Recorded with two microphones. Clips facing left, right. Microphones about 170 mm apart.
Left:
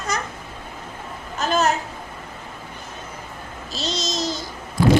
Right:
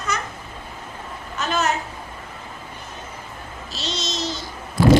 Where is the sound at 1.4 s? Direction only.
40° left (ahead or behind).